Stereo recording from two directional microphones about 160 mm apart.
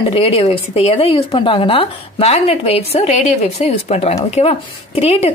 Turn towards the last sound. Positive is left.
turn(degrees=40)  # may be behind; listen again after turning